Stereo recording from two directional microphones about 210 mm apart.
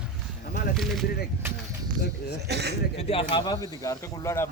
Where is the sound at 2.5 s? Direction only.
50° right (ahead or behind).